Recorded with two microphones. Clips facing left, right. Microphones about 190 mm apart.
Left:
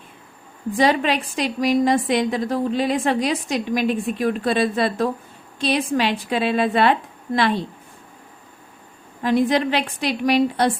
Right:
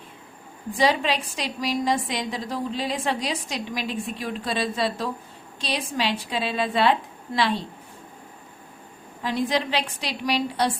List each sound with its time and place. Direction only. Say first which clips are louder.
0.8 s a woman's voice: left 4 dB; 55° left (ahead or behind)
9.2 s a woman's voice: left 7 dB; 50° left (ahead or behind)